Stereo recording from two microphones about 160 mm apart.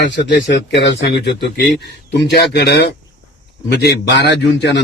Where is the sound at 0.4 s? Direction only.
90° left.